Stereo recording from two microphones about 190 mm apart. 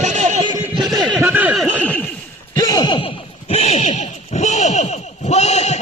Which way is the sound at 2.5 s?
20° left (ahead or behind).